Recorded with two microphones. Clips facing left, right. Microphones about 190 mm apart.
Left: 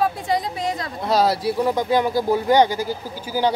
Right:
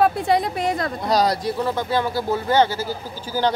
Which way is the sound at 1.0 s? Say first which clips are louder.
Left 3 dB; 5° left (ahead or behind).